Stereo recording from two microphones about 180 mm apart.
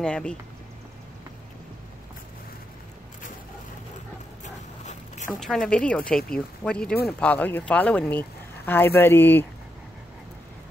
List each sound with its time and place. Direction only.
0.0 s speech: 5° left (ahead or behind)
4.8 s a sound: 40° left (ahead or behind)
5.3 s speech: centre (ahead or behind)